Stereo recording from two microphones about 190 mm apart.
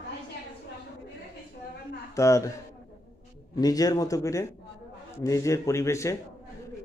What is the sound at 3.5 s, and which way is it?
Speech, 20° left (ahead or behind).